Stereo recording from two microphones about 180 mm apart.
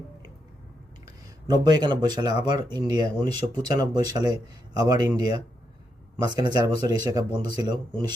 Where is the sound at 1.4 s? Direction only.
25° right (ahead or behind).